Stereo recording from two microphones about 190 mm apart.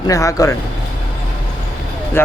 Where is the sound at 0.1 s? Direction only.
15° left (ahead or behind).